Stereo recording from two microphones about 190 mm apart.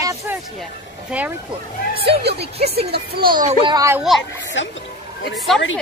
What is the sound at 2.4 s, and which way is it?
Speech, 30° right (ahead or behind).